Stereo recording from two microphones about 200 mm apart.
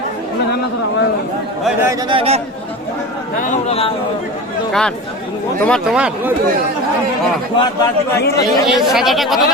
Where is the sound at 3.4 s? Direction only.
35° left (ahead or behind).